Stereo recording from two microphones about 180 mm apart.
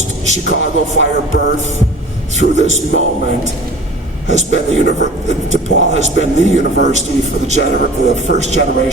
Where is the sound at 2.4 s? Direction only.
40° right (ahead or behind).